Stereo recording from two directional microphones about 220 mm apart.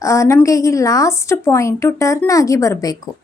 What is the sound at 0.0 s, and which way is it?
A woman's voice, 15° left (ahead or behind).